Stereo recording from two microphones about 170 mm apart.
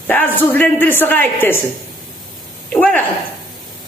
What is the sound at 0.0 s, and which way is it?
Speech, 10° left (ahead or behind).